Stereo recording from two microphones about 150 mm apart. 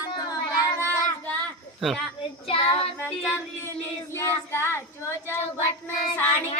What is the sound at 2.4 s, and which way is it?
Child singing, 40° left (ahead or behind).